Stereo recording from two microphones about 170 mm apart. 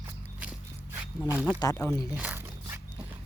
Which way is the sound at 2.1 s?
10° right (ahead or behind).